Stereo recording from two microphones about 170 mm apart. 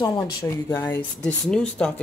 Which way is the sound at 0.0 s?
15° left (ahead or behind).